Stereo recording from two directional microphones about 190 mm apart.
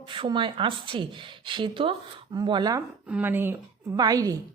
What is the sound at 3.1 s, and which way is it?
A woman's voice, 10° right (ahead or behind).